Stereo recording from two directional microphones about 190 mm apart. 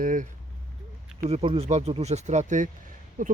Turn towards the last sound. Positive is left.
turn(degrees=-45)  # may be behind; listen again after turning